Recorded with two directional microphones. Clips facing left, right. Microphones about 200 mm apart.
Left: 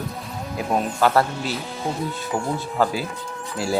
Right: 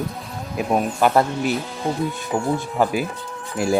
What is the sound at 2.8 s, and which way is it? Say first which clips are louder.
Speech: even; 15° right (ahead or behind).